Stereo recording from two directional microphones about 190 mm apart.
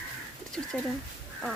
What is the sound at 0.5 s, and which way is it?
Speech, 5° left (ahead or behind).